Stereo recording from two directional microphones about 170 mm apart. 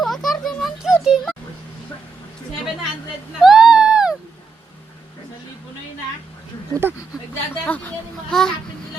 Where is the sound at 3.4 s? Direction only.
5° right (ahead or behind).